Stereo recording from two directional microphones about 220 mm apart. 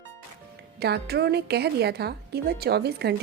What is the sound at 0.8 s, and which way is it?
A woman's voice, 45° right (ahead or behind).